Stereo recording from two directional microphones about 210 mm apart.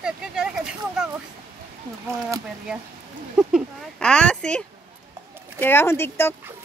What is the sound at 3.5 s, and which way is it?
Speech, centre (ahead or behind).